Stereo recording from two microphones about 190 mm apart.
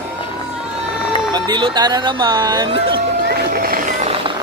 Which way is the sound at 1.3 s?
20° right (ahead or behind).